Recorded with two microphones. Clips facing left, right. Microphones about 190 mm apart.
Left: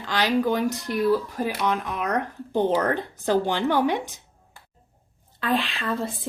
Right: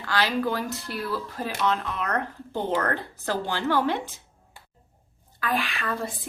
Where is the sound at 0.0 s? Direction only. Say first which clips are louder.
Left 3 dB; 15° left (ahead or behind).